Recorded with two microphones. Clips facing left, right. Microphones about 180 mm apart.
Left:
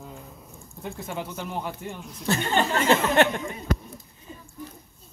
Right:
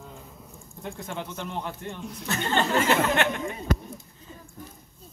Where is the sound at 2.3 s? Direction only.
30° left (ahead or behind).